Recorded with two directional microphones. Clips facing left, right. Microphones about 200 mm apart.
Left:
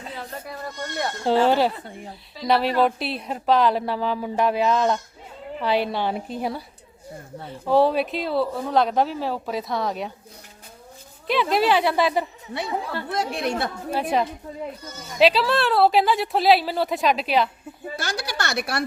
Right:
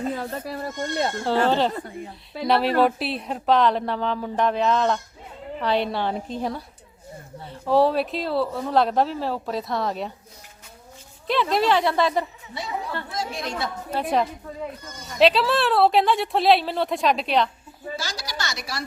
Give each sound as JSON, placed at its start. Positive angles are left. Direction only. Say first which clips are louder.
{"t": 0.0, "sound": "speech", "louder": "right 7 dB", "side_deg": -45}
{"t": 1.5, "sound": "a woman's voice", "louder": "left 2 dB", "side_deg": 10}
{"t": 11.3, "sound": "speech", "louder": "left 1 dB", "side_deg": 0}
{"t": 13.1, "sound": "a woman's voice", "louder": "left 5 dB", "side_deg": 65}
{"t": 13.9, "sound": "speech", "louder": "even", "side_deg": 0}
{"t": 17.9, "sound": "a woman's voice", "louder": "left 4 dB", "side_deg": 60}